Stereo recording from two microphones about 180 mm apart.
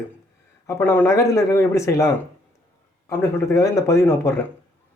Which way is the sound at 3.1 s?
15° left (ahead or behind).